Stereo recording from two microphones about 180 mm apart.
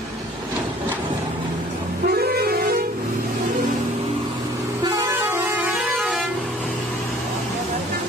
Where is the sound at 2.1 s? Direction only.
55° right (ahead or behind).